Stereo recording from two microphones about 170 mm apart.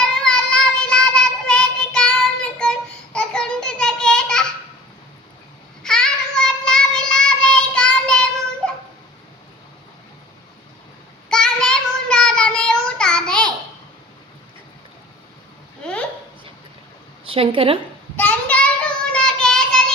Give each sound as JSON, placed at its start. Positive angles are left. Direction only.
{"t": 0.0, "sound": "child singing", "side_deg": 5}
{"t": 5.8, "sound": "child singing", "side_deg": 5}
{"t": 11.3, "sound": "child singing", "side_deg": 5}
{"t": 15.8, "sound": "a sound", "side_deg": 5}
{"t": 17.2, "sound": "a woman's voice", "side_deg": -35}
{"t": 18.2, "sound": "child singing", "side_deg": 10}